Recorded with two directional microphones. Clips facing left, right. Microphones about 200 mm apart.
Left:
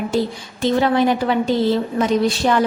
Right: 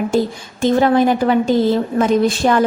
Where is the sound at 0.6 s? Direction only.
45° right (ahead or behind).